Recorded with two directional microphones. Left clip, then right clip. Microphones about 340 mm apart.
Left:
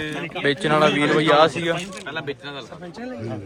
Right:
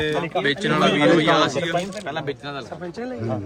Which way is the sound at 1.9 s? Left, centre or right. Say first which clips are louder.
Right 2 dB; right.